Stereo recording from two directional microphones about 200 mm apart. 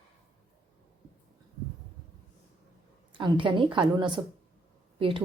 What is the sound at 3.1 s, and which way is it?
A woman's voice, 25° right (ahead or behind).